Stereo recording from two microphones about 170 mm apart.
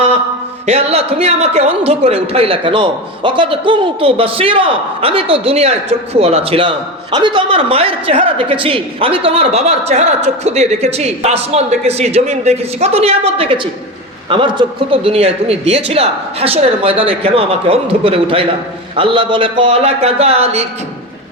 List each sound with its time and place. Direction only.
0.6 s a man's voice: 40° right (ahead or behind)